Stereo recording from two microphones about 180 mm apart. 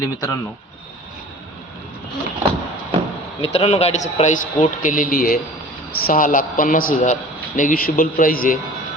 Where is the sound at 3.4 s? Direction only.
35° left (ahead or behind).